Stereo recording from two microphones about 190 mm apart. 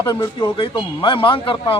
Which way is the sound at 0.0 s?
15° left (ahead or behind).